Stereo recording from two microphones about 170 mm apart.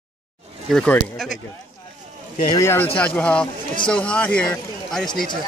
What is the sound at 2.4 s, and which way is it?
Speech, 20° left (ahead or behind).